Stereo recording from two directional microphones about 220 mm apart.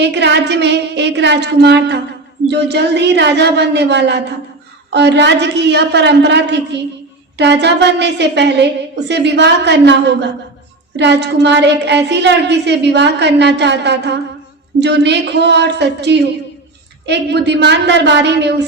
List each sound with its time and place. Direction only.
0.0 s a woman's voice: 50° right (ahead or behind)